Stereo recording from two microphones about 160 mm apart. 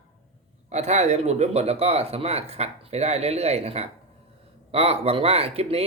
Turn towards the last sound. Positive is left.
turn(degrees=-40)  # may be behind; listen again after turning